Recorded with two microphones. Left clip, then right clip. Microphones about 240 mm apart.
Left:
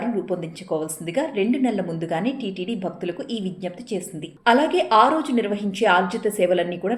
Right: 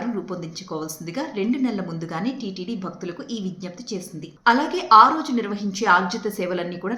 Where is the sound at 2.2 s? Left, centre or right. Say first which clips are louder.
Left 3 dB; right.